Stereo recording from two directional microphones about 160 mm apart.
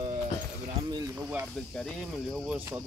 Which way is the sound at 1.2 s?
15° right (ahead or behind).